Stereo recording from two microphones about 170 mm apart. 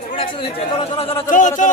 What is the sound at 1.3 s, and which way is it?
Speech, 45° left (ahead or behind).